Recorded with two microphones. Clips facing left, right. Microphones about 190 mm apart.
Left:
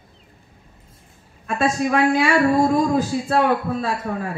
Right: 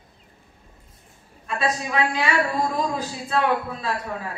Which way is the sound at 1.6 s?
50° left (ahead or behind).